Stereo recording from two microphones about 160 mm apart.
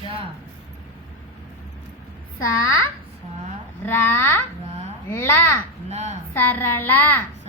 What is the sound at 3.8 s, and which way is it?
A woman's voice, 15° left (ahead or behind).